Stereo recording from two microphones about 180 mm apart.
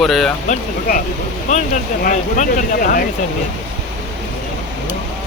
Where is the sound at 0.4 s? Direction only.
45° left (ahead or behind).